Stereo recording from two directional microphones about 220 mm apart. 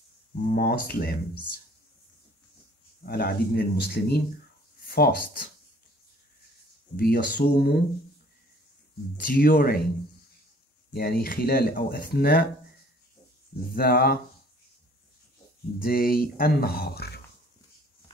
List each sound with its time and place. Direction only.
0.4 s speech: 45° left (ahead or behind)
3.1 s speech: 45° left (ahead or behind)
7.0 s speech: 45° left (ahead or behind)
9.1 s speech: 40° left (ahead or behind)
10.9 s speech: 40° left (ahead or behind)
13.7 s speech: 45° left (ahead or behind)
15.8 s speech: 40° left (ahead or behind)